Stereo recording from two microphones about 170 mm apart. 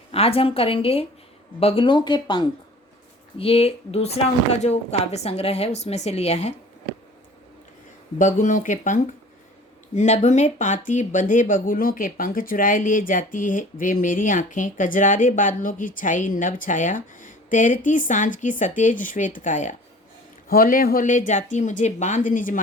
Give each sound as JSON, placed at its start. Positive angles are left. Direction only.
{"t": 0.1, "sound": "a woman's voice", "side_deg": 35}
{"t": 8.2, "sound": "speech", "side_deg": 50}
{"t": 20.5, "sound": "speech", "side_deg": 60}